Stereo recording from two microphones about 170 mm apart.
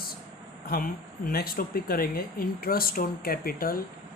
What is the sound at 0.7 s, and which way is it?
Speech, 60° left (ahead or behind).